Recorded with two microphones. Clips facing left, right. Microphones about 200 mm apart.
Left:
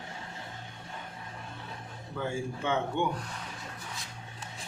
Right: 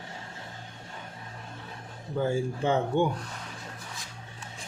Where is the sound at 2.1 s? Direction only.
35° right (ahead or behind).